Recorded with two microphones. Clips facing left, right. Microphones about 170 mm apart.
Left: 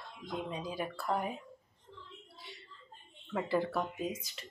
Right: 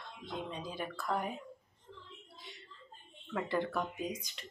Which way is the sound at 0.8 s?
10° left (ahead or behind).